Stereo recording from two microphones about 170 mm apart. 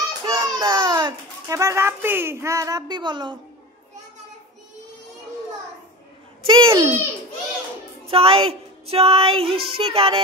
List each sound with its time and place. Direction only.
0.2 s a child's voice: 25° right (ahead or behind)
6.4 s a child's voice: 30° right (ahead or behind)
6.7 s a child's voice: 15° right (ahead or behind)
8.1 s a sound: 35° right (ahead or behind)